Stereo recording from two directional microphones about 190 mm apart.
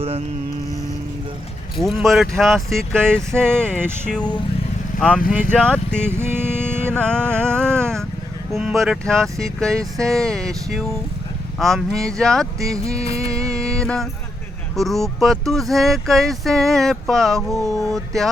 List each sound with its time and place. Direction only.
1.8 s speech: centre (ahead or behind)
3.8 s speech: 10° right (ahead or behind)
4.9 s speech: 5° left (ahead or behind)
6.0 s music: 10° right (ahead or behind)
6.9 s speech: 5° left (ahead or behind)
13.1 s music: 30° left (ahead or behind)
13.5 s music: 5° left (ahead or behind)
14.8 s speech: centre (ahead or behind)